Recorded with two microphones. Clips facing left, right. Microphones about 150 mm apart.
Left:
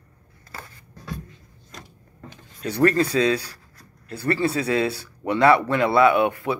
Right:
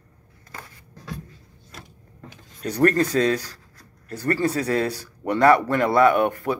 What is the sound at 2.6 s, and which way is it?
Speech, 45° right (ahead or behind).